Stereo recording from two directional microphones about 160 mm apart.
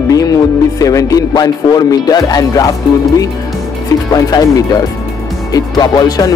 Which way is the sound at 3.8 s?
25° left (ahead or behind).